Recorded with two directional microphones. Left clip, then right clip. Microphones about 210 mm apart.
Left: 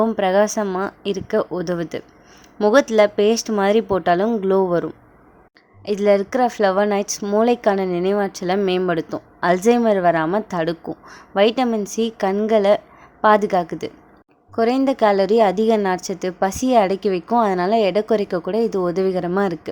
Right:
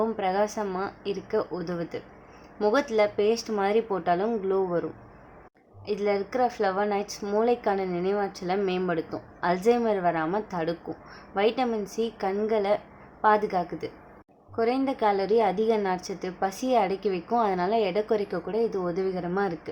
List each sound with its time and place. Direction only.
0.0 s a woman's voice: 40° left (ahead or behind)